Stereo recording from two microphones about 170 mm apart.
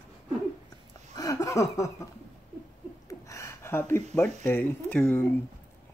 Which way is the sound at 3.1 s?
20° left (ahead or behind).